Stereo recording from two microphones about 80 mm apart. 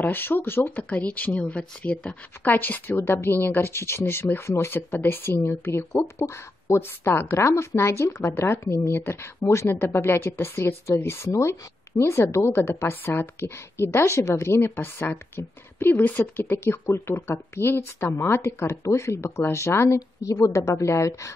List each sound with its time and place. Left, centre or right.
0.0 s a woman's voice: left